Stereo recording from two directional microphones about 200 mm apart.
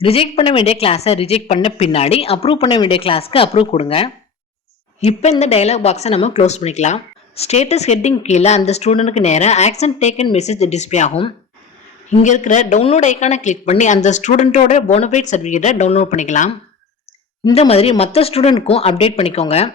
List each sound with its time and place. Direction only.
0.0 s speech: 30° left (ahead or behind)